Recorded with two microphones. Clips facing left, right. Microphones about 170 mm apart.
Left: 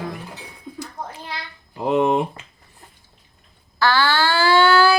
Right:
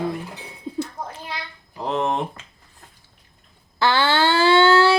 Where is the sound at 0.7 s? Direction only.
30° right (ahead or behind).